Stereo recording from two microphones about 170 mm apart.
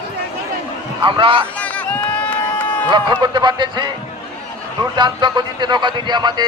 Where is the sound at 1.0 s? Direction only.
30° right (ahead or behind).